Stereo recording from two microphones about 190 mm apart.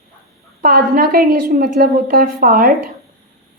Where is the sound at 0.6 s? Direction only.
50° right (ahead or behind).